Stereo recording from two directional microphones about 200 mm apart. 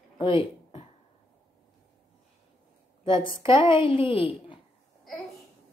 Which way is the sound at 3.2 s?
25° left (ahead or behind).